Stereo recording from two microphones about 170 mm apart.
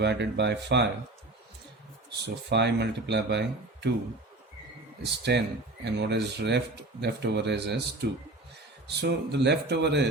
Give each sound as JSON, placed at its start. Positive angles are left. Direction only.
{"t": 0.0, "sound": "speech", "side_deg": -90}
{"t": 2.2, "sound": "speech", "side_deg": -80}
{"t": 5.3, "sound": "speech", "side_deg": -90}
{"t": 8.0, "sound": "speech", "side_deg": -70}
{"t": 8.9, "sound": "speech", "side_deg": -80}